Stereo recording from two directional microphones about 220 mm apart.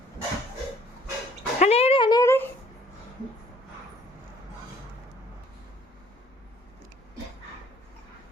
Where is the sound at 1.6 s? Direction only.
30° left (ahead or behind); by 2.4 s 10° left (ahead or behind).